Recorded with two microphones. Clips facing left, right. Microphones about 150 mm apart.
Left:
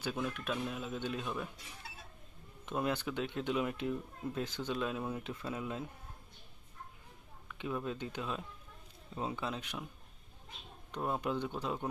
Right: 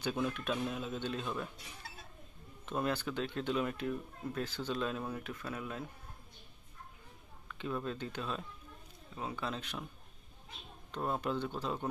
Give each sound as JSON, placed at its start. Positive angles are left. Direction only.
{"t": 0.0, "sound": "speech", "side_deg": 5}
{"t": 2.6, "sound": "speech", "side_deg": 15}
{"t": 7.4, "sound": "speech", "side_deg": 10}
{"t": 9.1, "sound": "speech", "side_deg": 25}
{"t": 10.9, "sound": "speech", "side_deg": 15}